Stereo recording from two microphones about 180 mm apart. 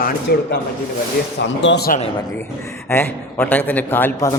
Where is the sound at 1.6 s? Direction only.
70° left (ahead or behind).